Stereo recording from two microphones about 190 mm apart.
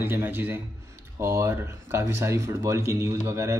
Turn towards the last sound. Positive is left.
turn(degrees=-15)  # may be behind; listen again after turning